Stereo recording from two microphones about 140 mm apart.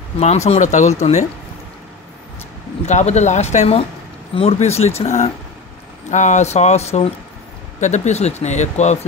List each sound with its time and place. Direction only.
0.2 s speech: 50° left (ahead or behind)
2.9 s speech: 55° left (ahead or behind)